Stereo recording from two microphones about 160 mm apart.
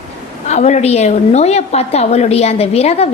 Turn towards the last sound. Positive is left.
turn(degrees=40)  # may be behind; listen again after turning